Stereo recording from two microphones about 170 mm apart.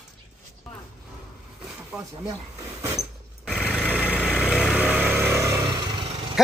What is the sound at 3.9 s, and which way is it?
Vehicle, 10° right (ahead or behind).